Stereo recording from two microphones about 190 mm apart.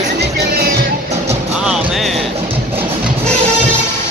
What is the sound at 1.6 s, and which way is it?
Music, 5° right (ahead or behind).